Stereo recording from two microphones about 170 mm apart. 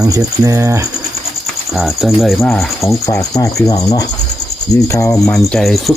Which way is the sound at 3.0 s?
15° left (ahead or behind).